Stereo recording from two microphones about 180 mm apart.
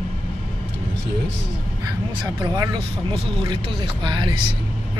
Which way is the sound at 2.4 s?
25° right (ahead or behind).